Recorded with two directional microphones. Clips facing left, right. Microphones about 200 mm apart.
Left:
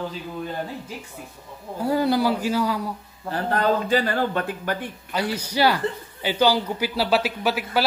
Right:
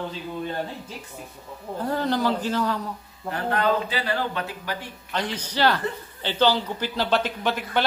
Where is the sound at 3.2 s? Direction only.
35° left (ahead or behind).